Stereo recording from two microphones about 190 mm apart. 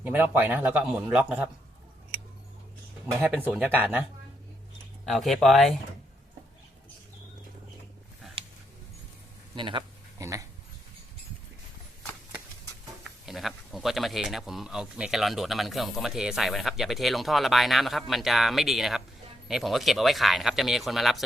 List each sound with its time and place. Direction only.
0.0 s a man's voice: 10° right (ahead or behind)
3.2 s a man's voice: 10° right (ahead or behind)
5.0 s speech: centre (ahead or behind)
9.6 s speech: 25° right (ahead or behind)
13.1 s speech: centre (ahead or behind)